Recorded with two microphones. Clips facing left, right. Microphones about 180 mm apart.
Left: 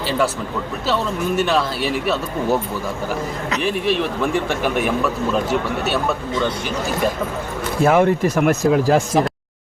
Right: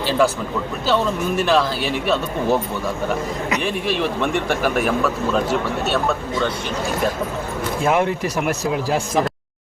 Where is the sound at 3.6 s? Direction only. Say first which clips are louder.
Left 4 dB; centre (ahead or behind).